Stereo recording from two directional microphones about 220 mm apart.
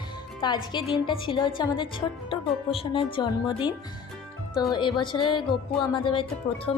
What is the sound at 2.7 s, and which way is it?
Speech, 25° left (ahead or behind).